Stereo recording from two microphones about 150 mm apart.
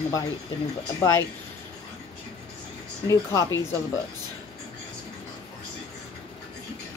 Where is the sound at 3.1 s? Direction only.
20° left (ahead or behind).